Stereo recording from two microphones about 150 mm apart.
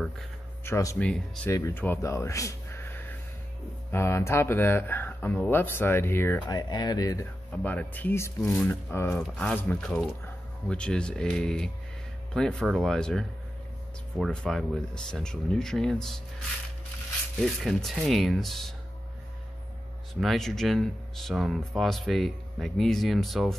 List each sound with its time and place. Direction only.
0.7 s speech: 20° left (ahead or behind)
0.9 s speech: 10° left (ahead or behind)
6.4 s speech: 30° left (ahead or behind)
7.6 s speech: 10° left (ahead or behind)
14.2 s speech: 5° left (ahead or behind)
17.4 s speech: centre (ahead or behind)
20.2 s speech: centre (ahead or behind)